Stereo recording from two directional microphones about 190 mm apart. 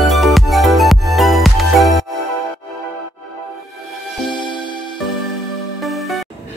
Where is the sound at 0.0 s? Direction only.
Centre (ahead or behind).